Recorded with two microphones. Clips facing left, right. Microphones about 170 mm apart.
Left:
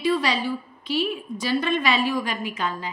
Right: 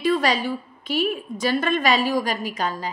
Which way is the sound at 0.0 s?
45° right (ahead or behind).